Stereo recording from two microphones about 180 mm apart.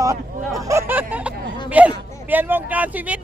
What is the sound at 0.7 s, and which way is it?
Speech, 15° right (ahead or behind).